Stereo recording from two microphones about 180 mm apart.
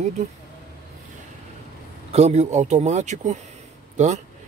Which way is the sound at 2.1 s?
40° right (ahead or behind).